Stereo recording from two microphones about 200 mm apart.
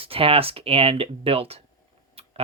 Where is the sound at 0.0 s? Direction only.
30° right (ahead or behind).